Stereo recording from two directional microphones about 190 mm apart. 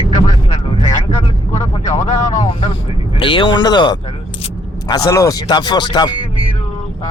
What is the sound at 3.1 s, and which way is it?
Speech, 25° left (ahead or behind).